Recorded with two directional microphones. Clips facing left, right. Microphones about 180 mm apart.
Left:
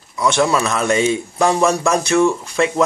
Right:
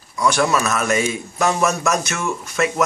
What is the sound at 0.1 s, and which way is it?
A man's voice, 25° left (ahead or behind).